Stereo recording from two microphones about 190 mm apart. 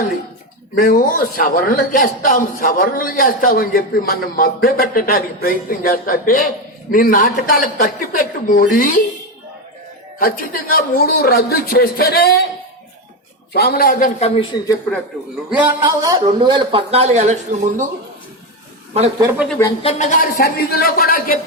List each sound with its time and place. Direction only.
0.8 s a man's voice: 50° left (ahead or behind)
10.2 s a man's voice: 50° left (ahead or behind)
13.5 s a man's voice: 55° left (ahead or behind)
14.2 s speech: 30° left (ahead or behind)
15.4 s a man's voice: 10° right (ahead or behind); by 17.8 s 40° right (ahead or behind)
19.5 s a woman's voice: 10° left (ahead or behind)
19.8 s a man's voice: 35° left (ahead or behind)